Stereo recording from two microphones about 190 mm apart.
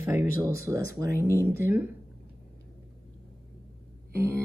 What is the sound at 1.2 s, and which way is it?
Speech, 15° right (ahead or behind).